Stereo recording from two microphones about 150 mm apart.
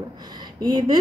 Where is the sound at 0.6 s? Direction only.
30° right (ahead or behind).